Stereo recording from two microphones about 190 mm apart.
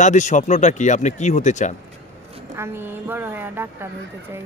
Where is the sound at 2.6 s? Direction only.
10° right (ahead or behind).